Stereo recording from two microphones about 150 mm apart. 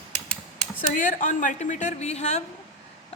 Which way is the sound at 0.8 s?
60° left (ahead or behind).